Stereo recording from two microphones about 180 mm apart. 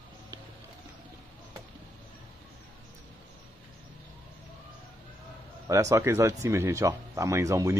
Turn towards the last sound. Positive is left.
turn(degrees=-15)  # may be behind; listen again after turning